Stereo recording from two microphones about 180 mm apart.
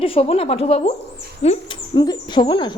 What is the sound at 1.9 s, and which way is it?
Speech, 25° left (ahead or behind).